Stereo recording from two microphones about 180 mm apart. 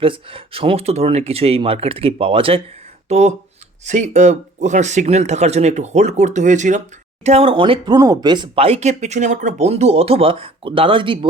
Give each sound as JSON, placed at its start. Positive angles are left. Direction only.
{"t": 0.0, "sound": "speech", "side_deg": -30}